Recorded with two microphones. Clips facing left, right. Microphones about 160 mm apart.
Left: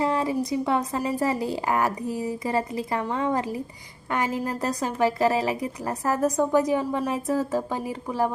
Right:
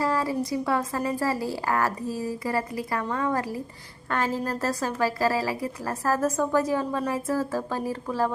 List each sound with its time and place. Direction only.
0.0 s a woman's voice: 20° left (ahead or behind)